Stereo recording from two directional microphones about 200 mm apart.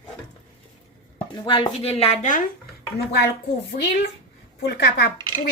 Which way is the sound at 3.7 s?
55° left (ahead or behind).